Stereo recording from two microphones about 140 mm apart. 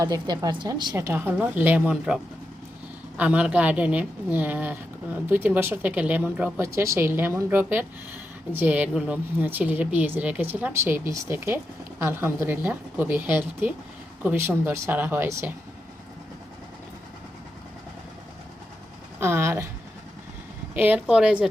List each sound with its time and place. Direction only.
0.0 s a woman's voice: 25° right (ahead or behind)
0.9 s a woman's voice: 20° right (ahead or behind)
19.2 s a sound: 20° right (ahead or behind)
20.7 s a woman's voice: 10° right (ahead or behind)